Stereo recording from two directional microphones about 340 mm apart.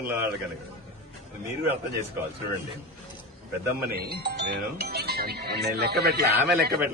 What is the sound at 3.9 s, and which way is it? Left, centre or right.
Speech, right.